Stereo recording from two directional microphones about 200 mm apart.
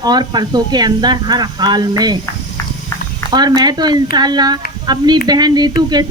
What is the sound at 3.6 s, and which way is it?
A man's voice, 20° right (ahead or behind).